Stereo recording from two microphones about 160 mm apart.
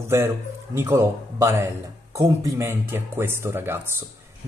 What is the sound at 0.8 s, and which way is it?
Speech, 15° right (ahead or behind).